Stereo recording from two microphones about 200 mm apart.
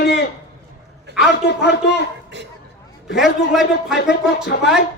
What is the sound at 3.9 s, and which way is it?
Speech, 55° left (ahead or behind).